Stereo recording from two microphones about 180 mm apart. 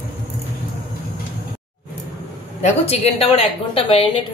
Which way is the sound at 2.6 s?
35° left (ahead or behind).